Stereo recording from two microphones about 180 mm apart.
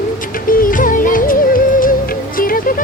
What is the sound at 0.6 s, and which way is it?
Music, 50° left (ahead or behind).